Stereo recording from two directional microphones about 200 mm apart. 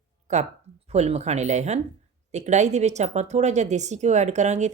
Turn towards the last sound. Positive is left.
turn(degrees=-35)  # may be behind; listen again after turning